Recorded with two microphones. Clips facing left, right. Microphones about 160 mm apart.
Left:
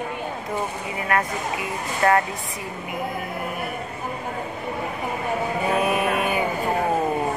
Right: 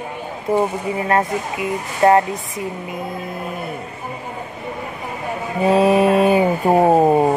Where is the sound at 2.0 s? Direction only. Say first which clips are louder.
Right 6 dB; 25° right (ahead or behind).